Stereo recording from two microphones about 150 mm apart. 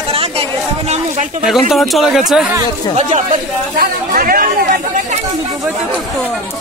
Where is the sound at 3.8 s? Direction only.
75° right (ahead or behind).